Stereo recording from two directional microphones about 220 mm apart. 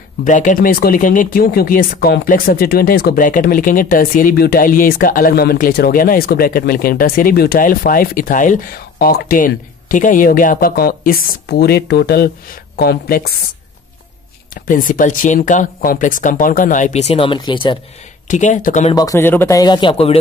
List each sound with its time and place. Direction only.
0.2 s speech: 35° left (ahead or behind)
14.5 s speech: 40° left (ahead or behind); by 17.7 s 20° left (ahead or behind)
18.3 s speech: 35° left (ahead or behind)
18.9 s speech: 15° left (ahead or behind)